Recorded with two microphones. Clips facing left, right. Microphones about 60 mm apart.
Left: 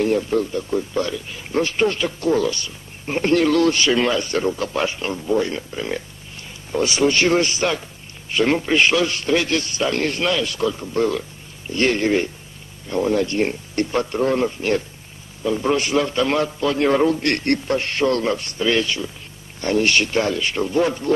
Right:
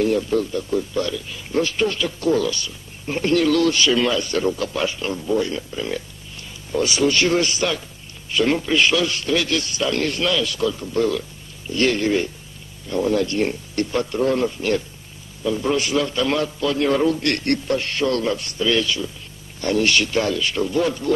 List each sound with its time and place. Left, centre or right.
0.0 s a man's voice: left